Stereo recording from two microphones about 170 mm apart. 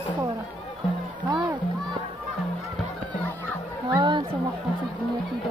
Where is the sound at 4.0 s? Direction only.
25° right (ahead or behind).